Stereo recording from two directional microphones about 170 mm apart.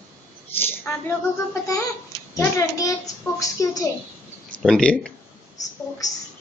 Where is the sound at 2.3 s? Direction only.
20° left (ahead or behind).